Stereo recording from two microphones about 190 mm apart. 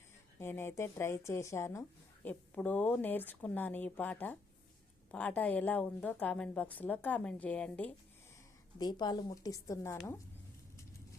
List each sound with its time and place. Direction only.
0.3 s a woman's voice: 10° left (ahead or behind)
8.8 s speech: 20° left (ahead or behind)